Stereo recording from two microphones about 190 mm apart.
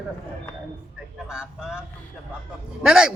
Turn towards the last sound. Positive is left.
turn(degrees=-5)  # may be behind; listen again after turning